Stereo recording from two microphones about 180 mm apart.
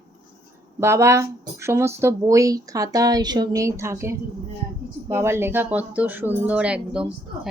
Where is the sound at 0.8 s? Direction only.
15° right (ahead or behind).